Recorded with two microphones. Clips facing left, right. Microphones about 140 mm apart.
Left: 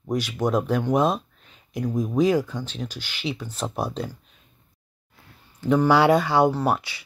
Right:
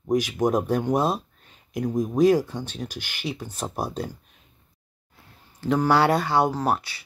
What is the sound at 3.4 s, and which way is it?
Speech, 15° right (ahead or behind).